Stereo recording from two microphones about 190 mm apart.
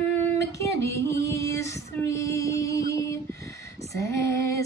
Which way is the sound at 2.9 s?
15° left (ahead or behind).